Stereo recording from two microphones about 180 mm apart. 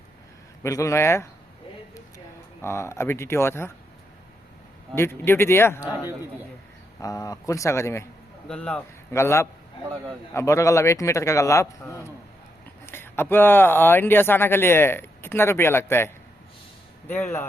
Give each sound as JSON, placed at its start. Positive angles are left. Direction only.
{"t": 0.6, "sound": "speech", "side_deg": 15}
{"t": 4.9, "sound": "speech", "side_deg": 15}
{"t": 7.0, "sound": "speech", "side_deg": 20}